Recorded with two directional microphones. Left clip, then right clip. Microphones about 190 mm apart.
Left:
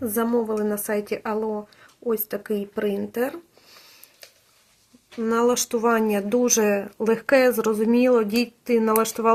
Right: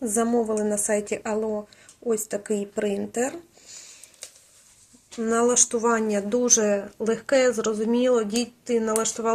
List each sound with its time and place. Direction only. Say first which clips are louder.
0.0 s a woman's voice: even; 20° left (ahead or behind)
5.2 s speech: even; 20° left (ahead or behind); by 9.3 s 40° left (ahead or behind)